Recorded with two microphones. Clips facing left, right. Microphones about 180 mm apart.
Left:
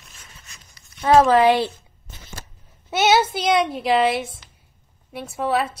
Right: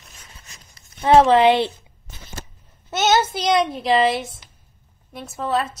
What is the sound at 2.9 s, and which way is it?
A woman's voice, 10° left (ahead or behind).